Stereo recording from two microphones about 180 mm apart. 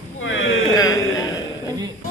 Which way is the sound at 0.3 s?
90° left.